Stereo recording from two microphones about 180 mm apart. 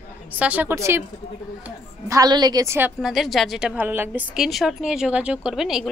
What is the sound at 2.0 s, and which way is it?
Speech, 20° right (ahead or behind).